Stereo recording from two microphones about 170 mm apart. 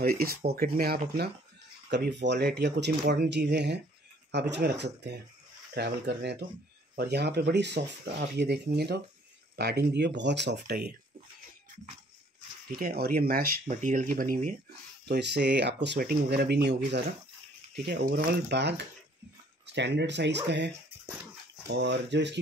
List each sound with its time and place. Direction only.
0.0 s speech: 60° right (ahead or behind)
1.9 s speech: 85° right
12.7 s speech: 60° right (ahead or behind)
15.0 s speech: 80° right
18.0 s speech: 75° right (ahead or behind); by 22.4 s 90° right